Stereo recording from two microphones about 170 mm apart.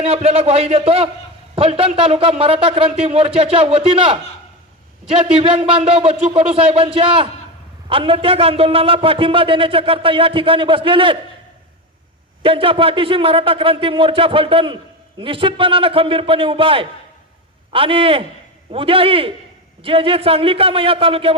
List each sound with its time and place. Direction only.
0.0 s a man's voice: 35° right (ahead or behind)
12.4 s a man's voice: 30° right (ahead or behind)